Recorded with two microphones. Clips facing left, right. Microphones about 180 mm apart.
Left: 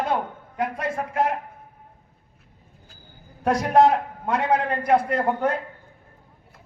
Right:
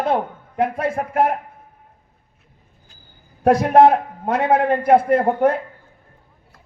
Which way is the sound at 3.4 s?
55° right (ahead or behind).